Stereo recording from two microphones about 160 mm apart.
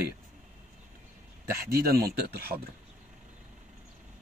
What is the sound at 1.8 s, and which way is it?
Speech, 75° right (ahead or behind).